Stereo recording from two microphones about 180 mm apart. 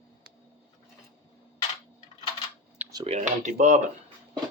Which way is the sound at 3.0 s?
40° right (ahead or behind).